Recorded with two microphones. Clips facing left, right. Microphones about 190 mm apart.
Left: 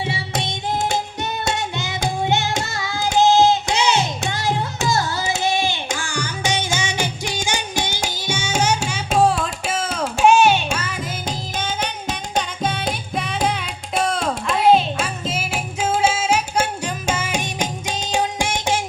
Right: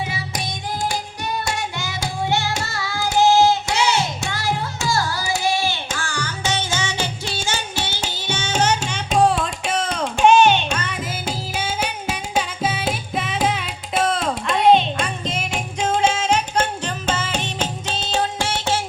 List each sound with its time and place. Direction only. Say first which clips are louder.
0.0 s singing: left 2 dB; 25° left (ahead or behind)
2.2 s music: right 1 dB; 20° left (ahead or behind)
11.3 s music: right 1 dB; 10° right (ahead or behind); by 18.8 s 15° left (ahead or behind)